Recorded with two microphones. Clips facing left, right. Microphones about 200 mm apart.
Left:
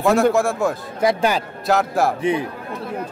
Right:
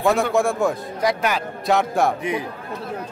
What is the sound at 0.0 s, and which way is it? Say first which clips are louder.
Speech: left 3 dB; centre (ahead or behind).